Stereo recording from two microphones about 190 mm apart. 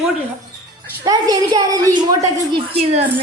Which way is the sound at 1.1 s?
20° right (ahead or behind).